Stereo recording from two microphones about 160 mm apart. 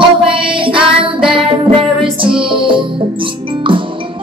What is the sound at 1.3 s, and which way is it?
Music, 35° right (ahead or behind).